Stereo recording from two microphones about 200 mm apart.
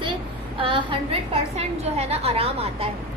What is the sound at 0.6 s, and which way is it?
A woman's voice, 25° right (ahead or behind).